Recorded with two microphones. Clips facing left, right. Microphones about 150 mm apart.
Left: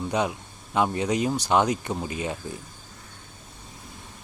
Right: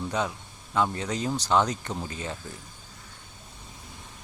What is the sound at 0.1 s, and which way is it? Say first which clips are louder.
A man's voice: left 3 dB; 15° left (ahead or behind).